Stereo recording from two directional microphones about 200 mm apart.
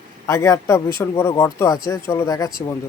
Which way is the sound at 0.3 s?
15° left (ahead or behind).